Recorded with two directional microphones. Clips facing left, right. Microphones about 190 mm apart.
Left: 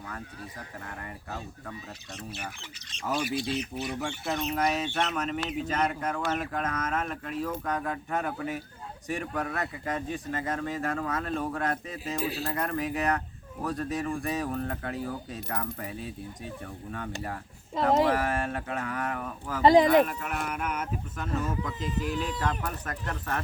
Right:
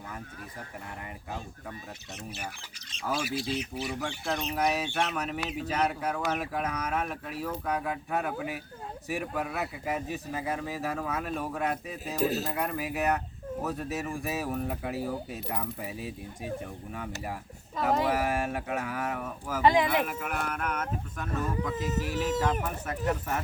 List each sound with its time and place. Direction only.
3.0 s speech: 5° right (ahead or behind)
19.6 s speech: 35° left (ahead or behind)
20.1 s speech: 5° right (ahead or behind)
21.8 s speech: 45° right (ahead or behind)
22.6 s speech: 5° right (ahead or behind)